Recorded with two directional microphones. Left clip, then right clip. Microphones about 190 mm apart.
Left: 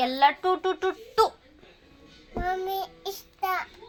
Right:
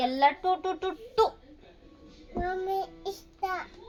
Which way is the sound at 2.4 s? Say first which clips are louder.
Left 2 dB; 25° right (ahead or behind).